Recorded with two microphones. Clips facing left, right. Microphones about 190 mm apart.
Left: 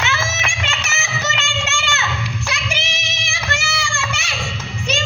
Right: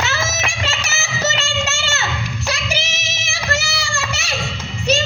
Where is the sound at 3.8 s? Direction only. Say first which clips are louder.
Even; 35° right (ahead or behind).